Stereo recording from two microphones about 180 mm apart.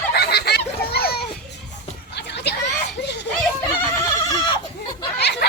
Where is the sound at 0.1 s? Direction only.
65° left (ahead or behind).